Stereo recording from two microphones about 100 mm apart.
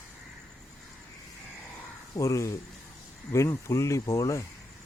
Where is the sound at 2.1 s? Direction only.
30° left (ahead or behind).